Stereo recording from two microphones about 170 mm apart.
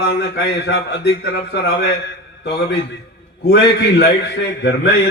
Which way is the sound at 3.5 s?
80° left.